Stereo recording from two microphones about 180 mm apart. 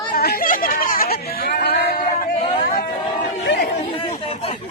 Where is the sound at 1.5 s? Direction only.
65° left (ahead or behind).